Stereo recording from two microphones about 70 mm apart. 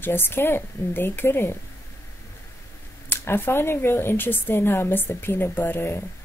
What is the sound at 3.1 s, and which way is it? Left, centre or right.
A woman's voice, left.